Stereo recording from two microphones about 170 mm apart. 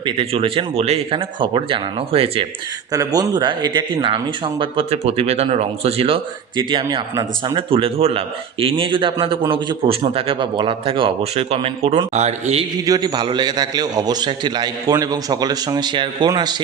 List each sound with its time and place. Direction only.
0.0 s speech: 30° right (ahead or behind)
2.9 s speech: 20° right (ahead or behind); by 12.6 s 40° right (ahead or behind)
12.7 s a man's voice: 20° right (ahead or behind)